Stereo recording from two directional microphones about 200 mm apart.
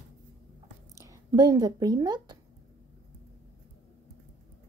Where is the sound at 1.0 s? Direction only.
20° right (ahead or behind).